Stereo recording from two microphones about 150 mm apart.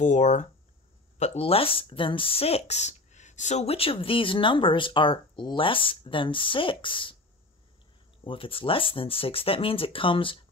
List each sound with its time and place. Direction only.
0.0 s speech: 50° left (ahead or behind); by 7.2 s 35° left (ahead or behind)
8.2 s speech: 35° left (ahead or behind)